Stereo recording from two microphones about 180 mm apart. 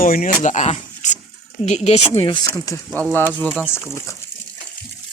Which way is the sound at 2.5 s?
15° left (ahead or behind).